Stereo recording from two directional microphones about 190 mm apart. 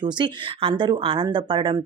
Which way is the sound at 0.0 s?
25° right (ahead or behind).